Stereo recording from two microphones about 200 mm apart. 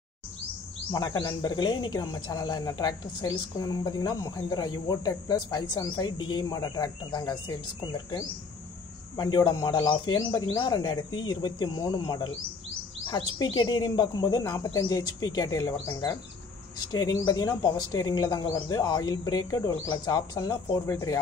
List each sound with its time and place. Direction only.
0.9 s speech: 20° left (ahead or behind)